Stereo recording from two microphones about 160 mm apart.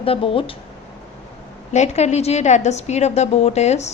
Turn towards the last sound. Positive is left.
turn(degrees=45)  # may be behind; listen again after turning